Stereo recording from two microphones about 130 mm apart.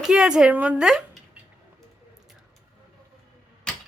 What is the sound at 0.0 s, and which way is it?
Speech, 5° right (ahead or behind).